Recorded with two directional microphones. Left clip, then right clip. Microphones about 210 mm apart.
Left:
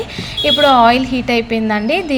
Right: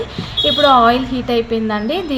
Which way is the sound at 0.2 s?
25° left (ahead or behind).